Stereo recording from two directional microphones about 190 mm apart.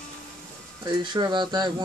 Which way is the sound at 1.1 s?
25° right (ahead or behind).